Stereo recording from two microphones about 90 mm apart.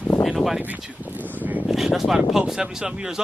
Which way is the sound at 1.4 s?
20° right (ahead or behind).